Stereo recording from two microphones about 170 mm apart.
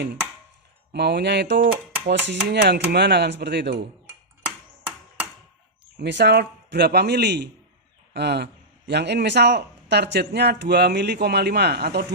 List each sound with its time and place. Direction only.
0.9 s a man's voice: 80° right
6.0 s a man's voice: 85° right; by 12.0 s 70° right (ahead or behind)